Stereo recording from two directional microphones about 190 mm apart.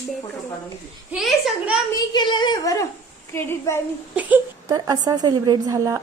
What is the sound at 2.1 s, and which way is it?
A child's voice, 25° left (ahead or behind).